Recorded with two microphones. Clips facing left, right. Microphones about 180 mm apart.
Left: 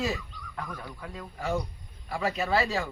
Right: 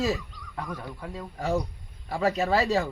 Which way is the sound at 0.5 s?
25° right (ahead or behind).